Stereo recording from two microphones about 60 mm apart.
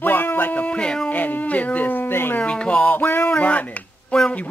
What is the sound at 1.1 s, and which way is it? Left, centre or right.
Speech, left.